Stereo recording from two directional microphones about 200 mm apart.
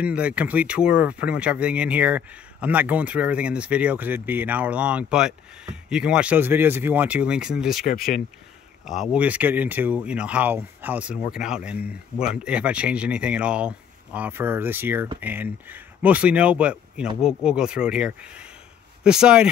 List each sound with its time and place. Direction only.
0.0 s speech: 5° right (ahead or behind)
7.8 s speech: 40° left (ahead or behind)
8.8 s speech: centre (ahead or behind)